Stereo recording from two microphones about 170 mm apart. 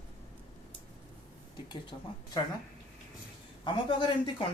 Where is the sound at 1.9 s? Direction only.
30° left (ahead or behind).